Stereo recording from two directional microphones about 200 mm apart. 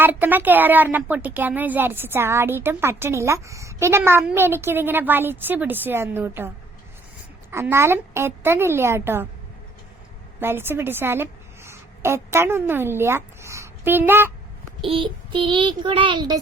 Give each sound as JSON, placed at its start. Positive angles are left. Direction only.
{"t": 0.0, "sound": "speech", "side_deg": -10}
{"t": 7.5, "sound": "speech", "side_deg": -15}
{"t": 10.4, "sound": "a woman's voice", "side_deg": -10}
{"t": 14.8, "sound": "child singing", "side_deg": -25}